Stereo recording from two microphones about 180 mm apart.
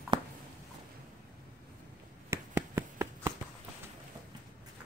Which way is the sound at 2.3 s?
15° right (ahead or behind).